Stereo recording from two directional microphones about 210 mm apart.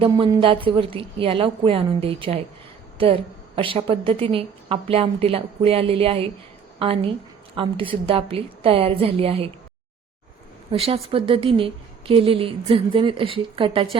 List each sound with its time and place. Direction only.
0.0 s a woman's voice: 25° right (ahead or behind)
10.7 s a woman's voice: 30° right (ahead or behind)